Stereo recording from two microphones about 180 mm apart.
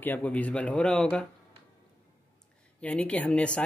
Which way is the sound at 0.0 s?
10° left (ahead or behind).